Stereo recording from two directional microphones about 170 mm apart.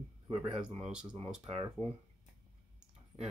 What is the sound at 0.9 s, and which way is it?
Speech, 5° right (ahead or behind).